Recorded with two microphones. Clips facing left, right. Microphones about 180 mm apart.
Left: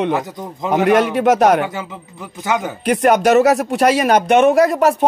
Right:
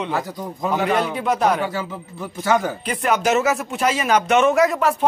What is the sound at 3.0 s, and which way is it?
Speech, 60° left (ahead or behind).